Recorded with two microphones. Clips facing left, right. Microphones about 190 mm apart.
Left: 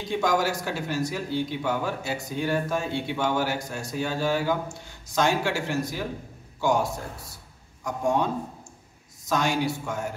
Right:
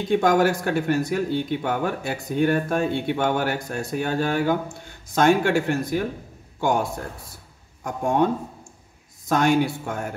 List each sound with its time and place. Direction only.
0.1 s speech: 55° right (ahead or behind)